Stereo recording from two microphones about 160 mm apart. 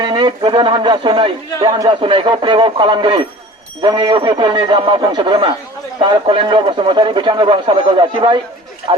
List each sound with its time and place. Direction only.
0.0 s a man's voice: 30° right (ahead or behind)